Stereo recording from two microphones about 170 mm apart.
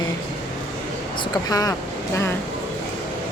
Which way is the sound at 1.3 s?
20° left (ahead or behind).